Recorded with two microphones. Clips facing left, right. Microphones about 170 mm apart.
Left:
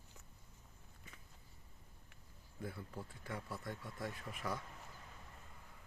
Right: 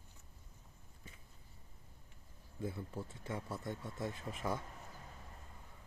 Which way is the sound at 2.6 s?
25° right (ahead or behind).